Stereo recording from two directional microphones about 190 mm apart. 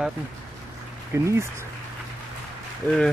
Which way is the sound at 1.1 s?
15° right (ahead or behind).